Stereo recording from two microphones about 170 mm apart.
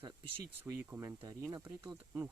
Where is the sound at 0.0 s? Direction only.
30° right (ahead or behind).